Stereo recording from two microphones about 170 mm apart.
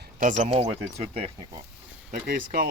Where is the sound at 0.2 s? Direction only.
45° right (ahead or behind).